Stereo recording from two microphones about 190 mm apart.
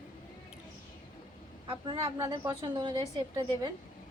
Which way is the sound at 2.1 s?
15° right (ahead or behind).